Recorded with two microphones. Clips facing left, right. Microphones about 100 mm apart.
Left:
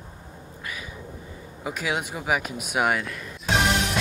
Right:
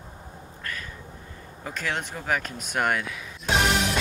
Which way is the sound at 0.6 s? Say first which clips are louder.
Even; 10° left (ahead or behind).